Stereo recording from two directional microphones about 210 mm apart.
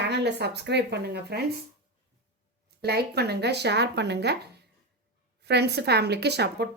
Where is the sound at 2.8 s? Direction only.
50° right (ahead or behind).